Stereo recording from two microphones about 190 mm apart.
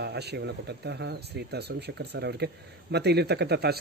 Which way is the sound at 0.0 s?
60° right (ahead or behind).